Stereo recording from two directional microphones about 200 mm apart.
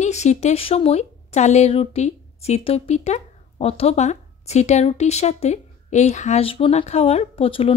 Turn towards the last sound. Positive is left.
turn(degrees=25)  # may be behind; listen again after turning